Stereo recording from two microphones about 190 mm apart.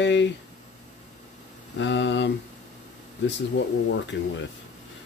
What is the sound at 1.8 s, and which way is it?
Speech, 70° left (ahead or behind).